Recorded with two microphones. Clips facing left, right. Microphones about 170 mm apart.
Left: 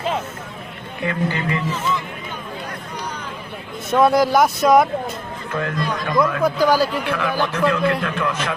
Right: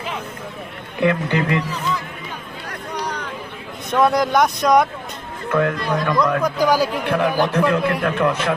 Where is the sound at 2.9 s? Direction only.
75° right (ahead or behind).